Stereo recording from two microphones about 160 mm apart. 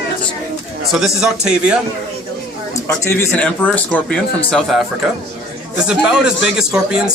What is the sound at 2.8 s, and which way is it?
A man's voice, 15° left (ahead or behind).